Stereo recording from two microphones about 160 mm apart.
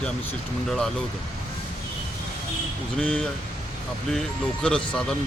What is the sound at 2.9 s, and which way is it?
Speech, 5° left (ahead or behind).